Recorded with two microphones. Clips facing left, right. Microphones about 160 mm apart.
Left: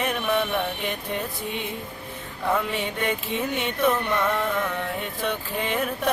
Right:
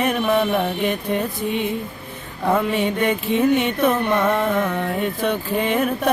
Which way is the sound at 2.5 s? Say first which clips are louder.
Right 6 dB; 50° right (ahead or behind).